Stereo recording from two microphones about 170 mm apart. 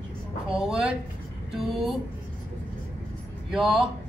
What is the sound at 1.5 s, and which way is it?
Speech, centre (ahead or behind).